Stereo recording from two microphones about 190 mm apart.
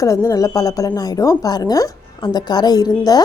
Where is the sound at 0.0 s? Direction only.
20° left (ahead or behind).